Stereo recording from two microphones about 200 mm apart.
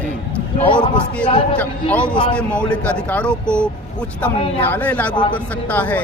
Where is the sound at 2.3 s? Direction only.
5° left (ahead or behind).